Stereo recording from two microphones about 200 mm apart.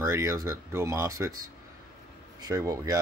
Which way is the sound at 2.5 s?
15° right (ahead or behind).